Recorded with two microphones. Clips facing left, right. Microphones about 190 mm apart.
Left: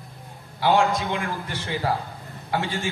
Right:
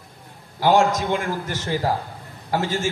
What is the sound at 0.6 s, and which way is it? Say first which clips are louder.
A man's voice: right 3 dB; 45° right (ahead or behind).